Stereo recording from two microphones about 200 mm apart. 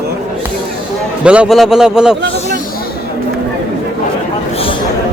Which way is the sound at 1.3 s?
5° right (ahead or behind).